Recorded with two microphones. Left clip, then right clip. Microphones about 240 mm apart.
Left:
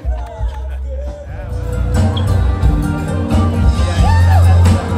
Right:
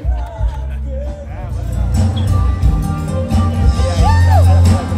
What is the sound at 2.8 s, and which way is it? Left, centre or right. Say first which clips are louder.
Music: even; right.